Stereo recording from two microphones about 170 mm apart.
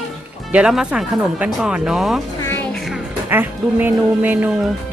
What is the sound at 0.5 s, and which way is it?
Speech, 5° right (ahead or behind).